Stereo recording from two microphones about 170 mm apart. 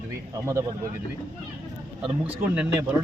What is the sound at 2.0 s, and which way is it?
Speech, 10° right (ahead or behind).